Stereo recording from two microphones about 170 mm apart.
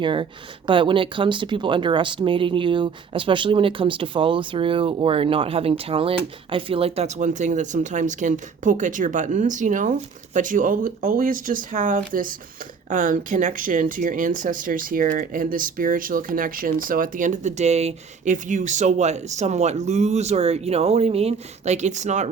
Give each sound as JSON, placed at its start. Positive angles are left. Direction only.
{"t": 0.0, "sound": "speech", "side_deg": -30}